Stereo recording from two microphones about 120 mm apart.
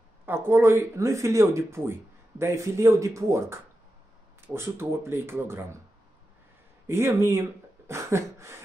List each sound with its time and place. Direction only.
0.3 s speech: 20° right (ahead or behind)
6.9 s speech: 20° right (ahead or behind)